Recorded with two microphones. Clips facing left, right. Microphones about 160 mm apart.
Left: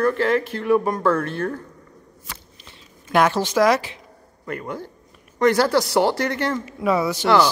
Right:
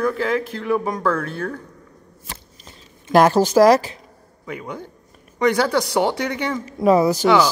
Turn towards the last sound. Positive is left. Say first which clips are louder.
# right 5 dB
turn(degrees=-40)  # may be behind; listen again after turning